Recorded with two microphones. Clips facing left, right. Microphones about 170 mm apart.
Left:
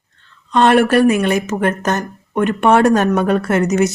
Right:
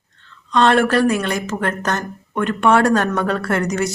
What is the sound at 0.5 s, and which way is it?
A woman's voice, 15° left (ahead or behind).